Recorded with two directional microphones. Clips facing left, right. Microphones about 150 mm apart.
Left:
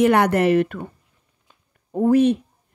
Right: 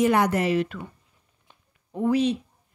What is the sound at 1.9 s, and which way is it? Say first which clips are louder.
Speech: left 6 dB; 45° left (ahead or behind).